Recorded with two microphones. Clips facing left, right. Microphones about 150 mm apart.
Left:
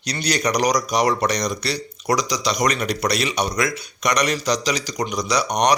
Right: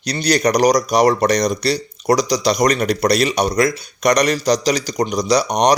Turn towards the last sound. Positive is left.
turn(degrees=-35)  # may be behind; listen again after turning